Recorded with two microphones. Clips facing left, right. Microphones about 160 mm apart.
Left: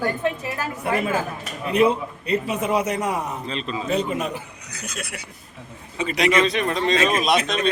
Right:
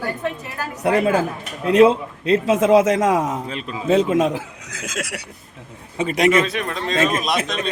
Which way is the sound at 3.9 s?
90° right.